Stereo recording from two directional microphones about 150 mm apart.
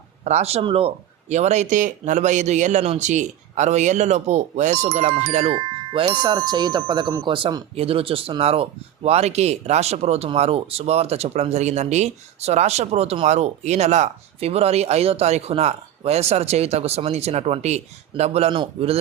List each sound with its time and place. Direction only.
0.3 s speech: 45° right (ahead or behind)